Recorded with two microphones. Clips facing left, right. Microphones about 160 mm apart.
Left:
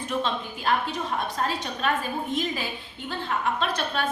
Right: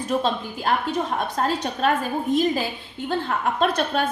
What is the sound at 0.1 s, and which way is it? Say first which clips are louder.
A woman's voice: right 5 dB; 40° right (ahead or behind).